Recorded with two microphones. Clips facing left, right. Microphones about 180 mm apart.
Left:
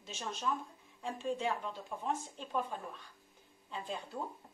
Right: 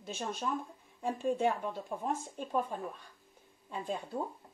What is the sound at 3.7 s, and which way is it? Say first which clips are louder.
Speech: right 4 dB; 50° right (ahead or behind).